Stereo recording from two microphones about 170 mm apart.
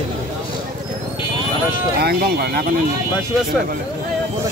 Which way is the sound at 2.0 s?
65° right (ahead or behind).